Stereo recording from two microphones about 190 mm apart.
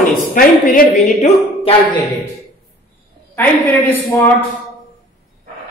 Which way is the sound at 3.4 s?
10° left (ahead or behind).